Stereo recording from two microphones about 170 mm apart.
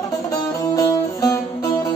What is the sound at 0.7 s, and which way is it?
Music, 20° left (ahead or behind).